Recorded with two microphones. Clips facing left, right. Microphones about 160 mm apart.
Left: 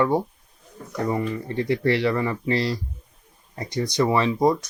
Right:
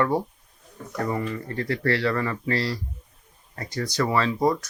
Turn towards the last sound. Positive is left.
turn(degrees=20)  # may be behind; listen again after turning